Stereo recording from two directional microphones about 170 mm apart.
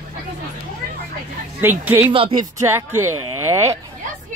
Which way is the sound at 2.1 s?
30° right (ahead or behind).